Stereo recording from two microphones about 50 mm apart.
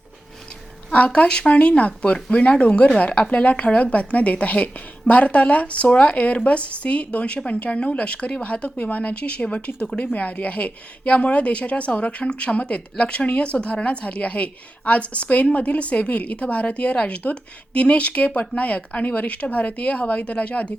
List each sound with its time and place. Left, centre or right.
0.9 s speech: left